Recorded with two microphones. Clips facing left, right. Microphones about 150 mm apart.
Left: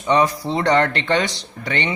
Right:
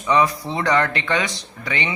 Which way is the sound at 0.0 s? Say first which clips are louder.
Left 1 dB; 30° left (ahead or behind).